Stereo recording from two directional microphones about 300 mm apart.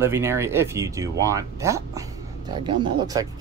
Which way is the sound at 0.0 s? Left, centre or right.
Centre.